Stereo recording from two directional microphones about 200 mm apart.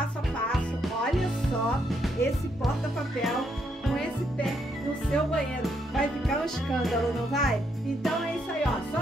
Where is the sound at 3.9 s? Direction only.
Centre (ahead or behind).